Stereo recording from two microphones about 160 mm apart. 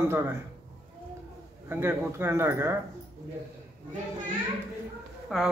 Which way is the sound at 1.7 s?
15° right (ahead or behind).